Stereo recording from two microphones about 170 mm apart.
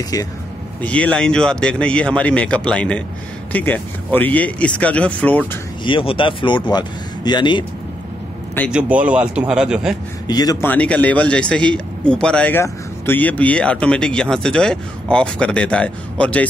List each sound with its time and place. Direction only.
0.8 s speech: 5° left (ahead or behind)
5.9 s speech: 30° left (ahead or behind)
8.7 s speech: 10° right (ahead or behind)
10.2 s speech: 25° left (ahead or behind)
10.7 s speech: 10° left (ahead or behind)